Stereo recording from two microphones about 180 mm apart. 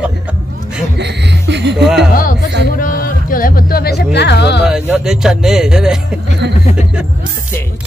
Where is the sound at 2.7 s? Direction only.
50° left (ahead or behind); by 4.6 s 70° left (ahead or behind).